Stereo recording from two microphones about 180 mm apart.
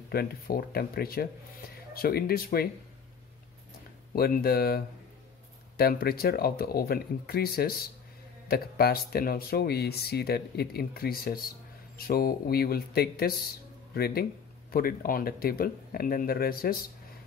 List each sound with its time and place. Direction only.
0.1 s speech: 55° left (ahead or behind)
4.1 s speech: 55° left (ahead or behind)